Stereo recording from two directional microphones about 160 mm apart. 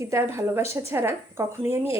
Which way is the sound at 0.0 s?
15° right (ahead or behind).